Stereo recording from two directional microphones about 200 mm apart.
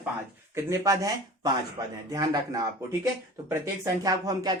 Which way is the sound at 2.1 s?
20° right (ahead or behind).